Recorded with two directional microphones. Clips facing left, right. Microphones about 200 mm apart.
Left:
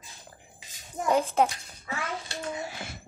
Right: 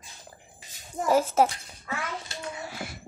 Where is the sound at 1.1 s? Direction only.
5° right (ahead or behind).